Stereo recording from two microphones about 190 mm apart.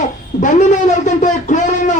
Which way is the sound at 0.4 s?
40° left (ahead or behind).